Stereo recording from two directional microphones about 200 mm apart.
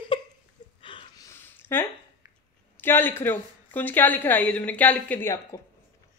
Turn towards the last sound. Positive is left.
turn(degrees=10)  # may be behind; listen again after turning